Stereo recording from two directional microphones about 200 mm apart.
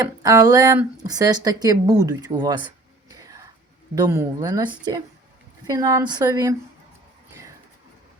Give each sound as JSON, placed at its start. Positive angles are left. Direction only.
{"t": 0.0, "sound": "speech", "side_deg": -15}
{"t": 3.1, "sound": "a sound", "side_deg": -15}
{"t": 3.9, "sound": "a woman's voice", "side_deg": -15}